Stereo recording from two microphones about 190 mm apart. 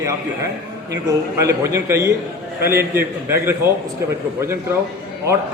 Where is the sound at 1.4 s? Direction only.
15° right (ahead or behind).